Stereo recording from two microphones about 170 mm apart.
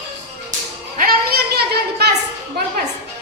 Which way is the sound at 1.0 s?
60° right (ahead or behind).